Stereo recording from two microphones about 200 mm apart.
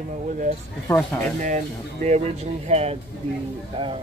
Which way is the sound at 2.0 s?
35° right (ahead or behind).